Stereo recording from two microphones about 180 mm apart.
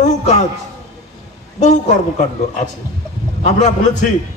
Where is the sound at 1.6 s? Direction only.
40° left (ahead or behind).